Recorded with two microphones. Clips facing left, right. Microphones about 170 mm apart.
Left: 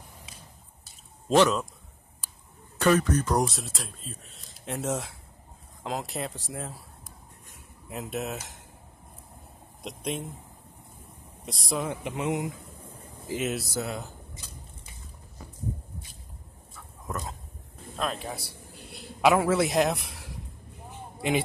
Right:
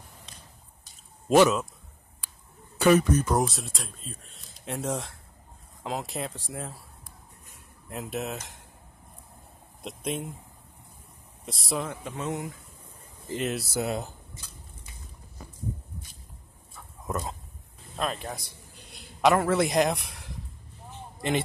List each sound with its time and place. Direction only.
0.3 s a sound: 5° left (ahead or behind)
1.3 s a man's voice: 10° right (ahead or behind)
2.8 s speech: 10° right (ahead or behind)
7.9 s speech: centre (ahead or behind)
9.8 s speech: 5° right (ahead or behind)
11.4 s speech: centre (ahead or behind)
11.9 s speech: 15° left (ahead or behind)
13.2 s speech: centre (ahead or behind)
13.7 s speech: 20° right (ahead or behind)
17.9 s a man's voice: centre (ahead or behind)
20.9 s a sound: 10° left (ahead or behind)